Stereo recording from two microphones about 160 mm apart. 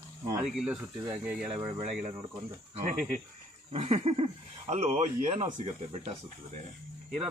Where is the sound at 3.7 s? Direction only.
40° right (ahead or behind).